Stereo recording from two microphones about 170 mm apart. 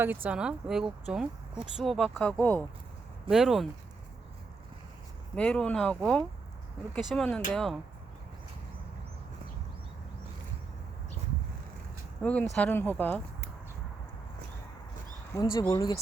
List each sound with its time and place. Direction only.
0.0 s speech: 10° right (ahead or behind); by 2.6 s 10° left (ahead or behind)
3.2 s speech: centre (ahead or behind)
5.3 s speech: 5° left (ahead or behind)
12.2 s speech: 10° left (ahead or behind)
15.5 s speech: 25° left (ahead or behind)